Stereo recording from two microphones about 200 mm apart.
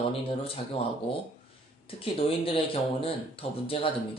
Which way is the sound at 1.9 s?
30° left (ahead or behind).